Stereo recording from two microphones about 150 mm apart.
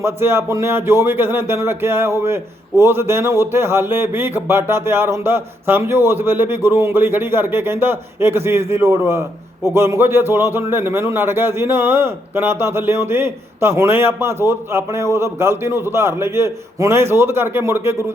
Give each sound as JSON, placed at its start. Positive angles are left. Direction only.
{"t": 0.0, "sound": "speech", "side_deg": -15}